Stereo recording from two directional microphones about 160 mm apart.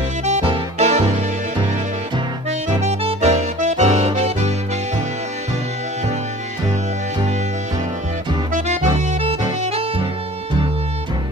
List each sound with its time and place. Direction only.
0.2 s music: 40° right (ahead or behind)
2.8 s music: 40° right (ahead or behind)
8.5 s accordion: 45° right (ahead or behind)